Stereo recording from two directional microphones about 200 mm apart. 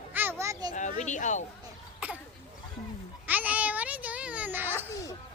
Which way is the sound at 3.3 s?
10° right (ahead or behind).